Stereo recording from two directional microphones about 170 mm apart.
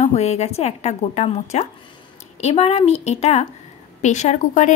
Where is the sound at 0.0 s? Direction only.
40° left (ahead or behind).